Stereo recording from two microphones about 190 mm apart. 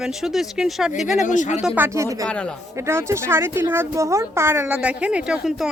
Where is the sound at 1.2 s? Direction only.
40° left (ahead or behind).